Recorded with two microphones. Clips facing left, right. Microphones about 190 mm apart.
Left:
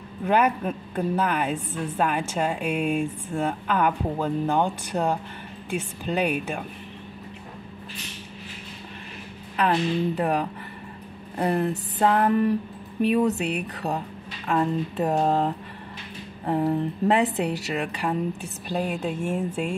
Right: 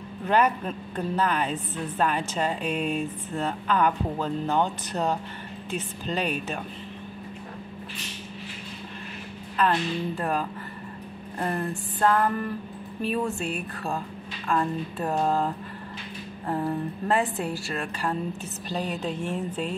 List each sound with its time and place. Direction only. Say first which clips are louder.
0.2 s a woman's voice: left 1 dB; 10° left (ahead or behind)
9.6 s a woman's voice: left 2 dB; 20° left (ahead or behind)